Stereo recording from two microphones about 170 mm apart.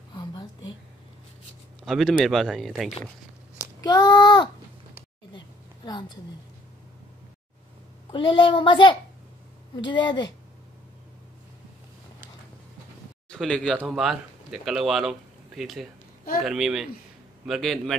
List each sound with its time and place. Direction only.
0.1 s a sound: 25° left (ahead or behind)
1.9 s speech: centre (ahead or behind)
3.8 s speech: 25° left (ahead or behind)
5.9 s a woman's voice: 25° left (ahead or behind)
8.1 s a child's voice: 30° left (ahead or behind)
13.3 s speech: 5° left (ahead or behind)